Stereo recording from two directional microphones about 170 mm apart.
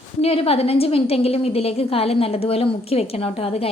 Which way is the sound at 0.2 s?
35° left (ahead or behind).